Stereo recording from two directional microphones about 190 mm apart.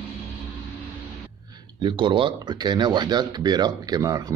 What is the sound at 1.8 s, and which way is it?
Speech, 25° right (ahead or behind).